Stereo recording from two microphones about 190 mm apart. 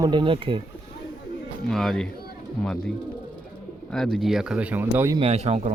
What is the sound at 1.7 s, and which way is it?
Speech, centre (ahead or behind).